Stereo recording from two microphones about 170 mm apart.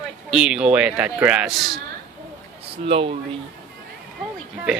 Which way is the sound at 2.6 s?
35° right (ahead or behind).